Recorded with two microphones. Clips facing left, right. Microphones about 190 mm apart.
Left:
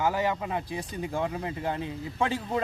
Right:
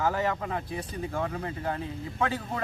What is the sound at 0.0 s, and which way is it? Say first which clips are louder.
A man's voice: left 1 dB; 10° left (ahead or behind).